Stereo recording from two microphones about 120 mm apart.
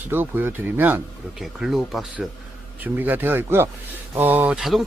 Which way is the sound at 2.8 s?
15° right (ahead or behind).